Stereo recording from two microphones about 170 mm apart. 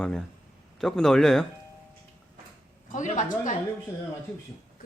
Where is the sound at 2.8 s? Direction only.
50° left (ahead or behind).